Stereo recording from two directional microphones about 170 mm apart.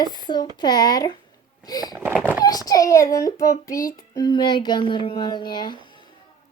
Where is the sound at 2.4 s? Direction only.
20° left (ahead or behind).